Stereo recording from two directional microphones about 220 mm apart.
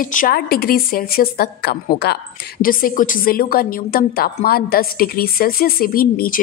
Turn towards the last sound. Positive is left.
turn(degrees=40)  # may be behind; listen again after turning